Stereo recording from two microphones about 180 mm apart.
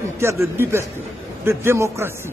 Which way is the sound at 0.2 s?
15° right (ahead or behind).